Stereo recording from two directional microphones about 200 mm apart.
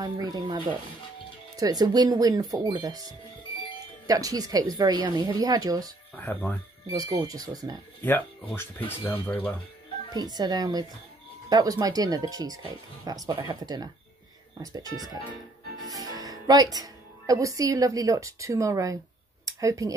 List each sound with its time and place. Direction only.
0.0 s speech: 20° right (ahead or behind)
1.6 s speech: 20° right (ahead or behind)
4.1 s speech: 20° right (ahead or behind)
6.1 s speech: 10° left (ahead or behind)
6.9 s speech: 20° right (ahead or behind)
8.0 s speech: 10° left (ahead or behind)
10.1 s speech: 20° right (ahead or behind)
16.2 s speech: 20° right (ahead or behind)
19.4 s a sound: 15° right (ahead or behind)